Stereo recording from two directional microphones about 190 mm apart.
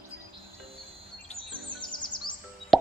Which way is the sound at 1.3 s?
35° left (ahead or behind).